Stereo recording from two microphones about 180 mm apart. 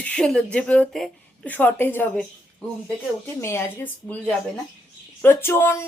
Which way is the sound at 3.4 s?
15° left (ahead or behind).